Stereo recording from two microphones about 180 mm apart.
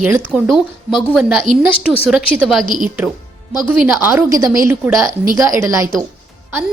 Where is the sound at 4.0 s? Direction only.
15° right (ahead or behind).